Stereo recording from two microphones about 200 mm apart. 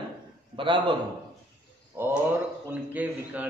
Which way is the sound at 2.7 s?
10° right (ahead or behind).